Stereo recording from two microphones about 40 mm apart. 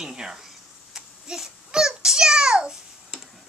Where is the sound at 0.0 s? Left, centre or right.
Centre.